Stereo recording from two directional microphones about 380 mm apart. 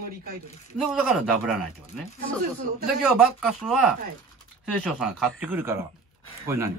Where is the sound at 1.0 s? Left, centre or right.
Centre.